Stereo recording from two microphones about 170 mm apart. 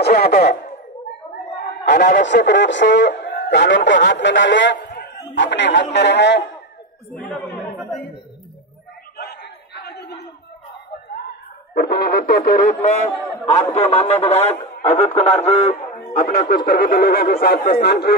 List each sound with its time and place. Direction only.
0.0 s speech: 65° left (ahead or behind)
2.0 s speech: 50° left (ahead or behind)
2.4 s speech: 90° left
9.1 s a sound: 75° left (ahead or behind)
11.7 s speech: 70° left (ahead or behind)